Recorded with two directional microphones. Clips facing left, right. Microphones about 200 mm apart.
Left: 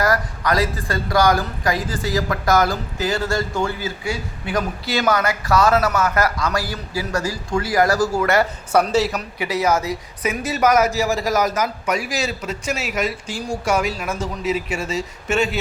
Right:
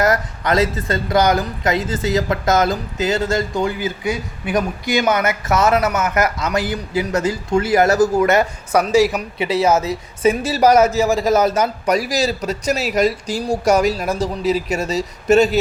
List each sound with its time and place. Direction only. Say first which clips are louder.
0.0 s a woman's voice: right 2 dB; 25° right (ahead or behind)
9.4 s speech: right 4 dB; 25° right (ahead or behind)